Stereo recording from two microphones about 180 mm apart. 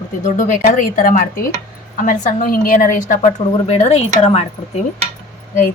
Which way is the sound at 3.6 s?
35° left (ahead or behind).